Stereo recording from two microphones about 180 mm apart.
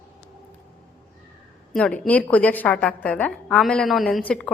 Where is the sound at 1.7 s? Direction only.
5° left (ahead or behind).